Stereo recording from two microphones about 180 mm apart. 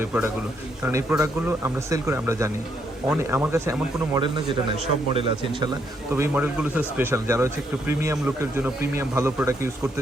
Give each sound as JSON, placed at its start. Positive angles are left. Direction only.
{"t": 0.0, "sound": "a man's voice", "side_deg": -15}
{"t": 6.1, "sound": "speech", "side_deg": -10}